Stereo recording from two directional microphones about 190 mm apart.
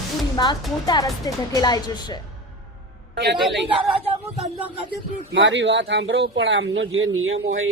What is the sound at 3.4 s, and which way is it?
Speech, centre (ahead or behind).